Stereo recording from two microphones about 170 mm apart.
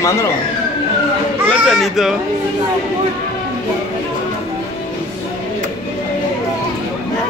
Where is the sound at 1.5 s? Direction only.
Centre (ahead or behind).